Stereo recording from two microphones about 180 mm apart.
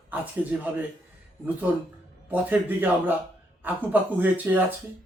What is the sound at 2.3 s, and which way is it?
A man's voice, 10° right (ahead or behind).